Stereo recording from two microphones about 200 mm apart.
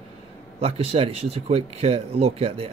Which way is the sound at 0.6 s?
30° right (ahead or behind).